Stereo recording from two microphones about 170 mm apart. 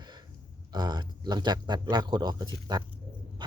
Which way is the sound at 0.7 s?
25° right (ahead or behind).